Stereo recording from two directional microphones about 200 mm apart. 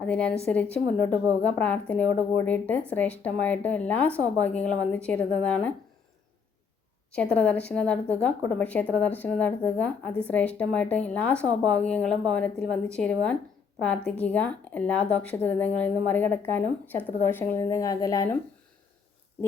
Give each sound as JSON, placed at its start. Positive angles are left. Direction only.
{"t": 0.0, "sound": "a woman's voice", "side_deg": 5}
{"t": 7.1, "sound": "a woman's voice", "side_deg": 5}